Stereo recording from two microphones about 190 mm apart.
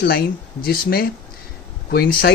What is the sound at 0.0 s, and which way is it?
Speech, 55° left (ahead or behind).